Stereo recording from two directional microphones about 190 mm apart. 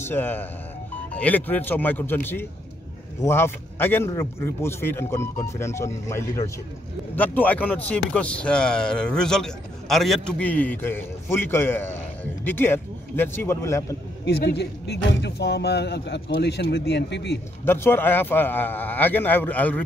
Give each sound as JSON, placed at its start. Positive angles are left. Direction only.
{"t": 0.0, "sound": "a man's voice", "side_deg": 10}
{"t": 14.2, "sound": "speech", "side_deg": 60}
{"t": 17.6, "sound": "a man's voice", "side_deg": 10}